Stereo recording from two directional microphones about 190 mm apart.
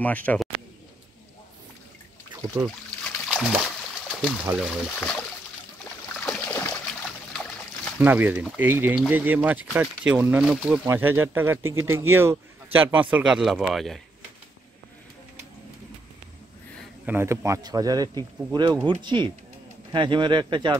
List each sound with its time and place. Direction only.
0.0 s speech: 10° left (ahead or behind)
3.3 s splash: 5° right (ahead or behind)
4.5 s speech: 5° right (ahead or behind)
6.1 s a sound: 10° left (ahead or behind)
8.0 s speech: 10° right (ahead or behind)
17.0 s speech: 10° right (ahead or behind)